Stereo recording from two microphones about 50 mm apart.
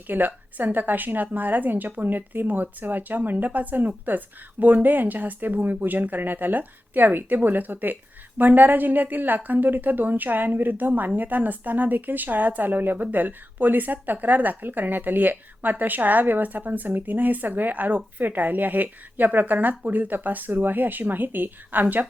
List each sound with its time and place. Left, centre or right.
0.1 s a woman's voice: right